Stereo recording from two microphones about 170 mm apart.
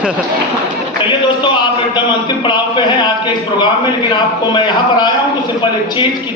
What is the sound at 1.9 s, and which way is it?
A man's voice, 30° left (ahead or behind).